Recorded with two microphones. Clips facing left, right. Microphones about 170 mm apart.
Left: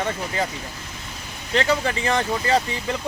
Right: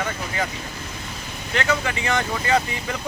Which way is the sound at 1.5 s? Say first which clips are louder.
Left 2 dB; 30° left (ahead or behind).